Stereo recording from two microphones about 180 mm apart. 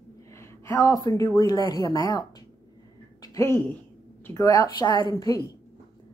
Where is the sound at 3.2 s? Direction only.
15° left (ahead or behind).